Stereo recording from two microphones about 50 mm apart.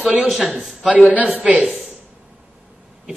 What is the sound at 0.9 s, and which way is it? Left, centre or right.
Speech, right.